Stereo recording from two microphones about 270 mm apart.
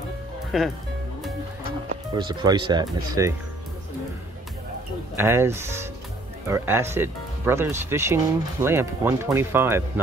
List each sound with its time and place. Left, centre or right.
0.5 s speech: centre
2.1 s speech: centre
5.1 s speech: centre